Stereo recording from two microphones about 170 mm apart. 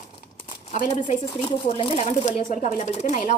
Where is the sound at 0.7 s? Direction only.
45° left (ahead or behind).